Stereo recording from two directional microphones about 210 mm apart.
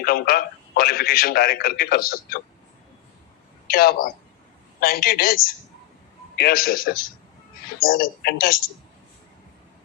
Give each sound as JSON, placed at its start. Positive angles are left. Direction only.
{"t": 0.0, "sound": "a man's voice", "side_deg": 45}
{"t": 3.7, "sound": "a man's voice", "side_deg": 45}